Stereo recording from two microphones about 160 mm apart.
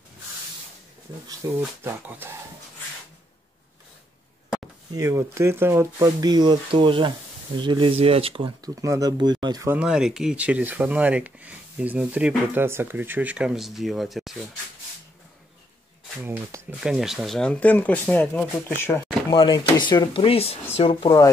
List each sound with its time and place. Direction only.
1.4 s speech: 20° right (ahead or behind)
4.9 s speech: 20° right (ahead or behind)
9.7 s speech: 5° right (ahead or behind)
16.2 s speech: 10° right (ahead or behind); by 19.0 s 15° left (ahead or behind)
19.3 s speech: 30° left (ahead or behind)